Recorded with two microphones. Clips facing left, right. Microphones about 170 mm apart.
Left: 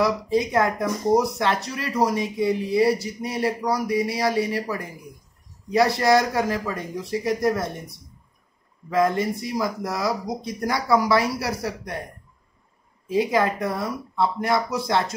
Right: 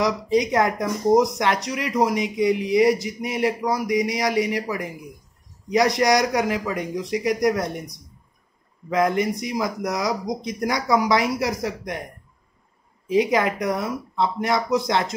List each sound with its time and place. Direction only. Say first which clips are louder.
0.0 s speech: right 1 dB; 20° right (ahead or behind)
13.1 s speech: right 1 dB; 20° right (ahead or behind)